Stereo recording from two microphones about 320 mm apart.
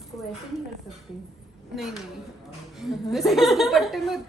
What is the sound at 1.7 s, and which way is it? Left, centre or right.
A woman's voice, centre.